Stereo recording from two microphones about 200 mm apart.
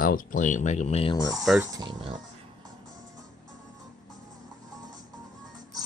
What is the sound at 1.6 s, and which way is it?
Speech, 20° right (ahead or behind).